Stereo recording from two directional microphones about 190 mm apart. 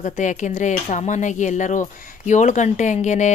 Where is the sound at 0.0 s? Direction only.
40° left (ahead or behind).